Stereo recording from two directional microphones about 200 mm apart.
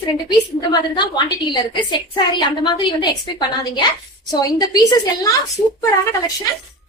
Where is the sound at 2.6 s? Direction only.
25° left (ahead or behind).